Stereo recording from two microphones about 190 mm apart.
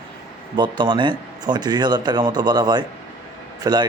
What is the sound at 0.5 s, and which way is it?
Speech, 25° right (ahead or behind).